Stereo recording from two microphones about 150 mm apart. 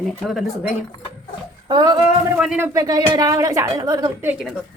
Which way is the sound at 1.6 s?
30° right (ahead or behind).